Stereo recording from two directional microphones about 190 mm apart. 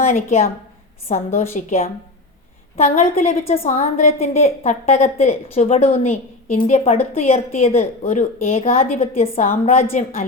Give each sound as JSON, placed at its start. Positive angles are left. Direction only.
{"t": 0.0, "sound": "a woman's voice", "side_deg": 35}